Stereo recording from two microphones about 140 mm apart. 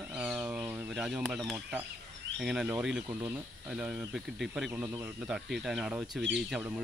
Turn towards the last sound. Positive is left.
turn(degrees=-5)  # may be behind; listen again after turning